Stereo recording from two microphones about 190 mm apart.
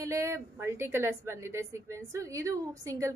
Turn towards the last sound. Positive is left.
turn(degrees=-15)  # may be behind; listen again after turning